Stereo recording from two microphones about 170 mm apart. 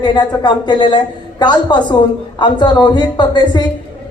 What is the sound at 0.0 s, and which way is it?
Speech, 25° left (ahead or behind).